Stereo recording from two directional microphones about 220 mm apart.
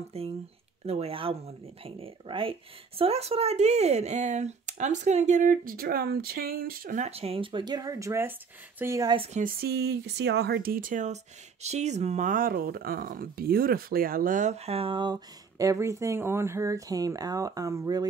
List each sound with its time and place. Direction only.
0.1 s speech: 25° right (ahead or behind)
9.4 s speech: 45° right (ahead or behind); by 18.0 s 15° right (ahead or behind)